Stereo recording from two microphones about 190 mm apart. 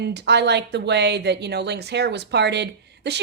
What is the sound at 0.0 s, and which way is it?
Speech, 60° right (ahead or behind).